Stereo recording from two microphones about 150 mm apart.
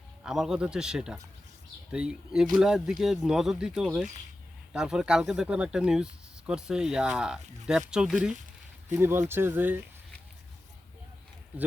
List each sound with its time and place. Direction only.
0.2 s speech: 5° right (ahead or behind)
8.9 s speech: 15° right (ahead or behind)